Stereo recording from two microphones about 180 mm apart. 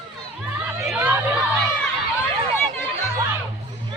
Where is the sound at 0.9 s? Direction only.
10° right (ahead or behind).